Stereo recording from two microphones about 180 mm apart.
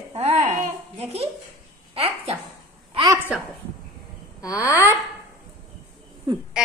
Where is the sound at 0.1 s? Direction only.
35° right (ahead or behind).